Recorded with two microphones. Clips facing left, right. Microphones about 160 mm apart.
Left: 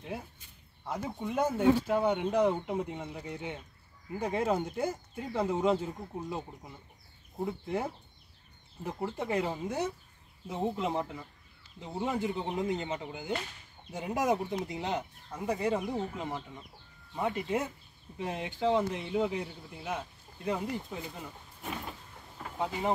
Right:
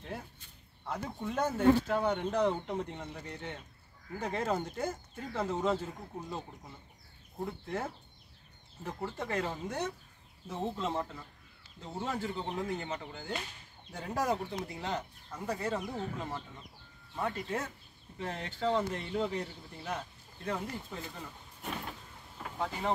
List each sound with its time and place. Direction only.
0.8 s speech: 10° left (ahead or behind)
7.3 s speech: 10° left (ahead or behind)
22.6 s speech: 15° left (ahead or behind)